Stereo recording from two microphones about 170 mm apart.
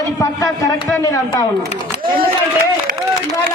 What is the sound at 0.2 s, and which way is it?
A man's voice, 20° left (ahead or behind).